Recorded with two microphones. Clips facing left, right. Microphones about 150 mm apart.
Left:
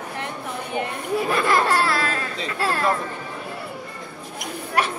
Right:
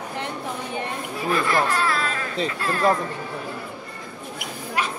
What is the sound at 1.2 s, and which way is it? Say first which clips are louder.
Speech: even; 70° left (ahead or behind).